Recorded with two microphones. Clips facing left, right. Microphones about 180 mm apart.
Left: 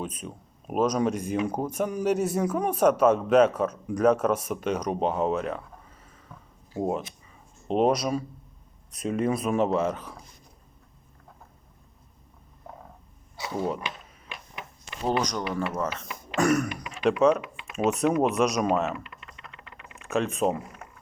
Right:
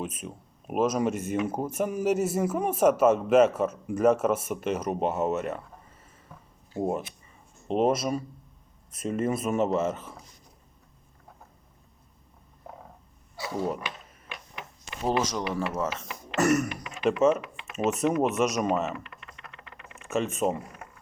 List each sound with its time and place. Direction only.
0.0 s a man's voice: 5° right (ahead or behind)
7.7 s a man's voice: centre (ahead or behind)
13.3 s a sound: 25° left (ahead or behind)
15.0 s a man's voice: 5° right (ahead or behind)
20.0 s speech: centre (ahead or behind)